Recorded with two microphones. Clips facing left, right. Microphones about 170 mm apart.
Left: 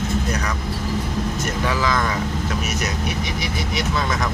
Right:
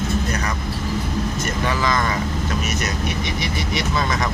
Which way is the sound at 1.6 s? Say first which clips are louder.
Even; 5° left (ahead or behind).